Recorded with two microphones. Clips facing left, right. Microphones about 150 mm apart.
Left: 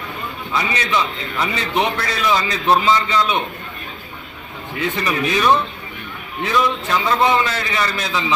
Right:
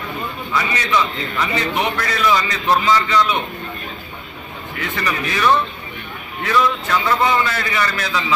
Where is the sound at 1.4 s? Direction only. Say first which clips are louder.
Left 1 dB; 25° left (ahead or behind).